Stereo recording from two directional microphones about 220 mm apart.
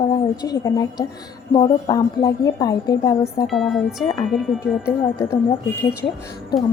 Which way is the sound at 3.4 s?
Centre (ahead or behind).